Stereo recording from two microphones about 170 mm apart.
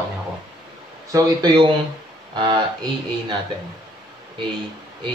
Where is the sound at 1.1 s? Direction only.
20° right (ahead or behind).